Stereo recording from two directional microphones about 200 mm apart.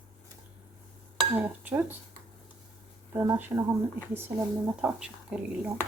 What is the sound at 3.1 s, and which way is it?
Speech, 10° right (ahead or behind).